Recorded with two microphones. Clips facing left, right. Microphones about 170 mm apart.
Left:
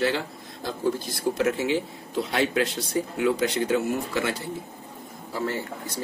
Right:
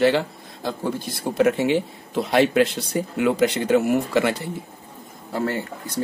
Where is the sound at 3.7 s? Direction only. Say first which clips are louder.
Right 7 dB; 80° right.